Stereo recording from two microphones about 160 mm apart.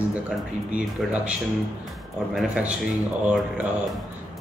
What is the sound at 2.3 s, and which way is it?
Speech, 5° right (ahead or behind).